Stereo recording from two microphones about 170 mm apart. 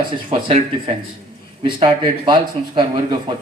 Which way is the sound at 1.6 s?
25° right (ahead or behind).